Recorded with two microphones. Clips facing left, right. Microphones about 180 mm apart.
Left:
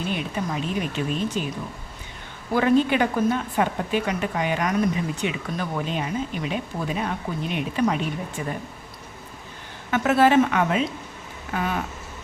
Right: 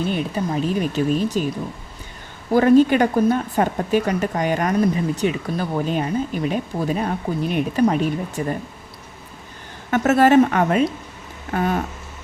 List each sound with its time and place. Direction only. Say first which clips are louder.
0.1 s a woman's voice: right 5 dB; 40° right (ahead or behind)
2.5 s a woman's voice: right 6 dB; 40° right (ahead or behind)
9.9 s a woman's voice: right 4 dB; 45° right (ahead or behind)